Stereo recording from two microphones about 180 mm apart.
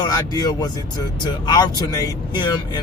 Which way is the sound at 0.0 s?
20° left (ahead or behind).